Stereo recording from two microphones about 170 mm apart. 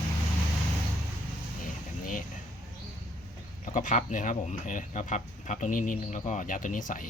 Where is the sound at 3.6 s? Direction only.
50° left (ahead or behind).